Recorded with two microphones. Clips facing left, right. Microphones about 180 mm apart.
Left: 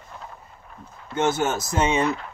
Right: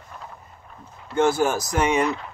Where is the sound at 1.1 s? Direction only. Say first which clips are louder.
Right 3 dB; 20° left (ahead or behind).